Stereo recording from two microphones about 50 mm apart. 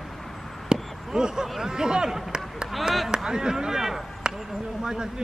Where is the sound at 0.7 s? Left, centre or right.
Centre.